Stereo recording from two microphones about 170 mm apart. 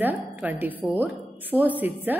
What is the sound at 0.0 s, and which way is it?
A woman's voice, 10° right (ahead or behind).